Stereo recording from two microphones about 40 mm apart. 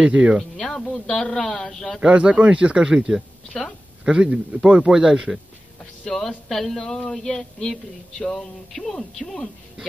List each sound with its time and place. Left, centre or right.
0.0 s speech: right
0.6 s speech: centre
2.0 s speech: right
2.9 s speech: centre
6.0 s speech: centre